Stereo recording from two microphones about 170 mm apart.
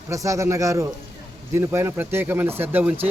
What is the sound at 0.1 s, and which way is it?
Speech, 20° right (ahead or behind).